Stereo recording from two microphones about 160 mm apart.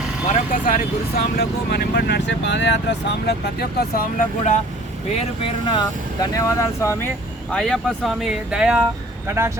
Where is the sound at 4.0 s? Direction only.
55° left (ahead or behind).